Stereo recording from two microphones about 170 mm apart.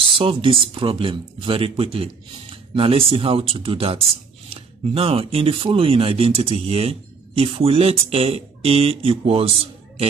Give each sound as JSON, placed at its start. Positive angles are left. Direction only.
{"t": 0.2, "sound": "speech", "side_deg": -30}